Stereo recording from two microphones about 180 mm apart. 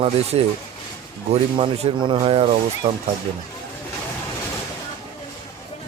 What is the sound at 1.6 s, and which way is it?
Speech, 30° right (ahead or behind).